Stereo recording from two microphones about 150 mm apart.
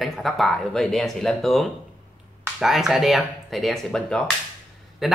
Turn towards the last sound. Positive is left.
turn(degrees=0)  # may be behind; listen again after turning